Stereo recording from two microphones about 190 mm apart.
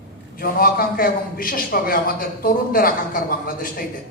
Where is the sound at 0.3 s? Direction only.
50° left (ahead or behind).